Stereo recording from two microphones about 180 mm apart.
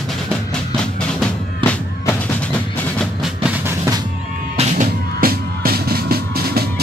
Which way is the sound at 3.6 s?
15° right (ahead or behind).